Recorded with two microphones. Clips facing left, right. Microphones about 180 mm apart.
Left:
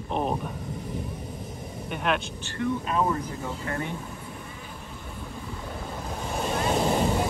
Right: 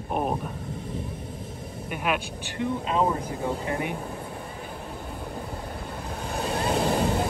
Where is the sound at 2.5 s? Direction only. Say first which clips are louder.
Right 1 dB; 20° right (ahead or behind).